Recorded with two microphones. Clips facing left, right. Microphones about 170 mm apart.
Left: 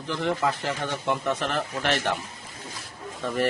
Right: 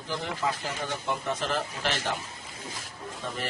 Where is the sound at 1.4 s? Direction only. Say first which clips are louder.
Left 2 dB; 60° left (ahead or behind).